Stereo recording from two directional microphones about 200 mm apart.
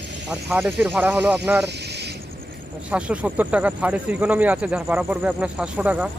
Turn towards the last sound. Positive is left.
turn(degrees=-5)  # may be behind; listen again after turning